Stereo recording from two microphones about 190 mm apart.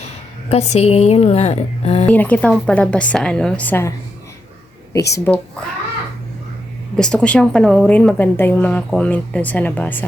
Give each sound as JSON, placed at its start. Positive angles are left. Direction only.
{"t": 0.5, "sound": "a woman's voice", "side_deg": 35}
{"t": 2.0, "sound": "a woman's voice", "side_deg": 10}
{"t": 5.1, "sound": "a woman's voice", "side_deg": 10}
{"t": 6.9, "sound": "a woman's voice", "side_deg": 5}